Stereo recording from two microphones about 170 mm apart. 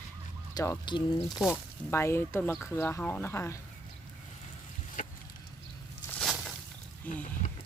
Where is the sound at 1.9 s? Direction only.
15° left (ahead or behind).